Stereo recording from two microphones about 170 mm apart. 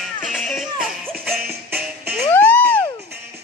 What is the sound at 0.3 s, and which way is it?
Music, centre (ahead or behind).